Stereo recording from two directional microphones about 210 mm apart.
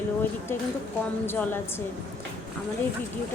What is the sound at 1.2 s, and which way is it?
Speech, 10° left (ahead or behind).